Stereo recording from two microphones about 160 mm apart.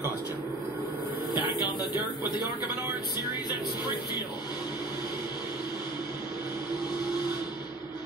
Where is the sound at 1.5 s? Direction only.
25° left (ahead or behind).